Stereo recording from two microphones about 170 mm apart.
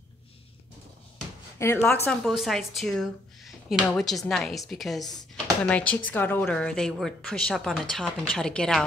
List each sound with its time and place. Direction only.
1.6 s a woman's voice: 15° left (ahead or behind)
2.2 s a woman's voice: centre (ahead or behind)